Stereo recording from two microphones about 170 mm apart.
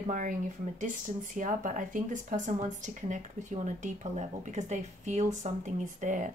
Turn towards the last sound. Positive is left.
turn(degrees=-45)  # may be behind; listen again after turning